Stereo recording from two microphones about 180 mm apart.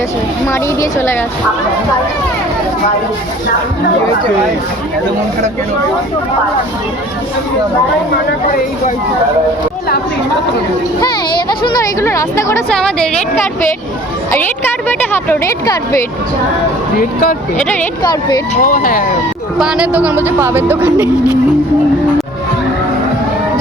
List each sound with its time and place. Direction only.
0.4 s speech: 15° left (ahead or behind)
11.0 s speech: 25° left (ahead or behind)
12.7 s a woman's voice: 5° left (ahead or behind)
14.8 s speech: 10° left (ahead or behind)
17.0 s speech: 50° left (ahead or behind)
18.0 s speech: 20° left (ahead or behind)
18.6 s speech: 50° left (ahead or behind)
19.5 s a woman's voice: 5° right (ahead or behind)